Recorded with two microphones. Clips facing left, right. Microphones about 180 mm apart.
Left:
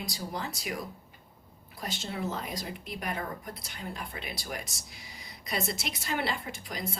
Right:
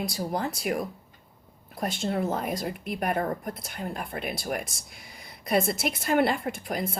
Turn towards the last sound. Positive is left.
turn(degrees=-55)  # may be behind; listen again after turning